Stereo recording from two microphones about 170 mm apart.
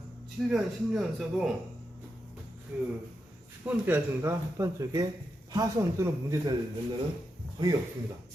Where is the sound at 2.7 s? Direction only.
10° right (ahead or behind).